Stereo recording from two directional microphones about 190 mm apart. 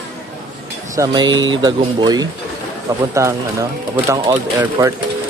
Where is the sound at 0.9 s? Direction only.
20° right (ahead or behind).